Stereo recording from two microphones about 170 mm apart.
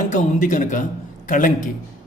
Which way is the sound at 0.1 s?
50° left (ahead or behind).